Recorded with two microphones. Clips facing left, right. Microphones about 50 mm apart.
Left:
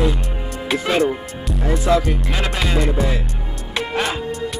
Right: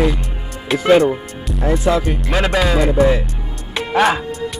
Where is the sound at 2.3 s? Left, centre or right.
Right.